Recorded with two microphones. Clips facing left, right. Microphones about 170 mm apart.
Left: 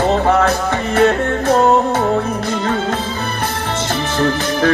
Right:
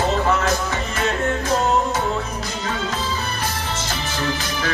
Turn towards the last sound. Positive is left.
turn(degrees=55)  # may be behind; listen again after turning